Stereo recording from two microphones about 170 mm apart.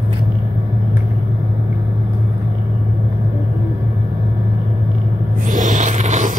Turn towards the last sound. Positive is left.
turn(degrees=-45)  # may be behind; listen again after turning